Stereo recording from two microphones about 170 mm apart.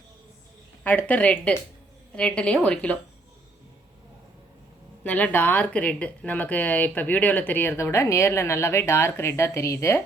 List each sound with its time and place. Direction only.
0.9 s a woman's voice: 10° left (ahead or behind)
5.0 s speech: 10° left (ahead or behind)